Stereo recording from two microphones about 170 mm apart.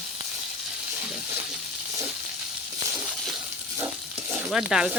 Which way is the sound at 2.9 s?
Centre (ahead or behind).